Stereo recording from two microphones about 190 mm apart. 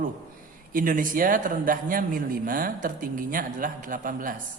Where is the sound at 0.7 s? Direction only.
45° right (ahead or behind).